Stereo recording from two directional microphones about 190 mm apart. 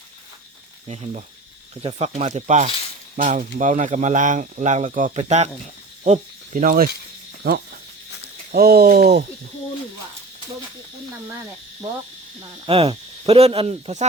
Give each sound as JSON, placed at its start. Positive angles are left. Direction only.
{"t": 0.9, "sound": "speech", "side_deg": -35}
{"t": 12.4, "sound": "speech", "side_deg": -30}